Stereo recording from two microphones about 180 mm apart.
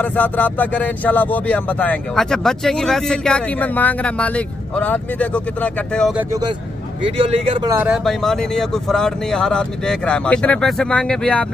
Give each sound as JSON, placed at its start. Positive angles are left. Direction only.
{"t": 0.0, "sound": "speech", "side_deg": 10}
{"t": 7.2, "sound": "speech", "side_deg": -30}
{"t": 7.7, "sound": "speech", "side_deg": -10}
{"t": 8.0, "sound": "speech", "side_deg": 0}